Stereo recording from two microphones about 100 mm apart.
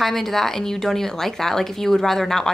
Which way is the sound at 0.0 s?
Centre (ahead or behind).